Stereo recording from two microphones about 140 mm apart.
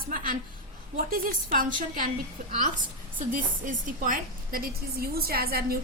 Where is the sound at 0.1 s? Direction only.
75° right (ahead or behind).